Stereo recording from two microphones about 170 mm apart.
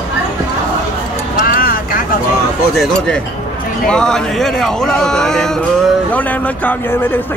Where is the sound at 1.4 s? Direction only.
55° left (ahead or behind).